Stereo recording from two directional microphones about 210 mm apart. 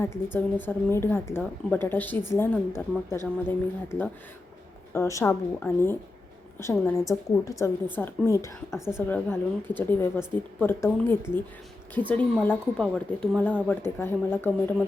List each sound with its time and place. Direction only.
0.0 s speech: 10° left (ahead or behind)
4.9 s speech: 15° left (ahead or behind)
8.7 s a woman's voice: 5° right (ahead or behind)
9.0 s speech: 10° left (ahead or behind)